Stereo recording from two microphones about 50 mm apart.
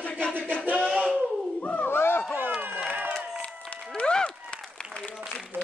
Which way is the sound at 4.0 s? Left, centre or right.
Left.